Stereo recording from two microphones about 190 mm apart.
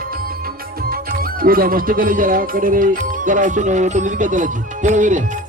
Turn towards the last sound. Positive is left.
turn(degrees=-40)  # may be behind; listen again after turning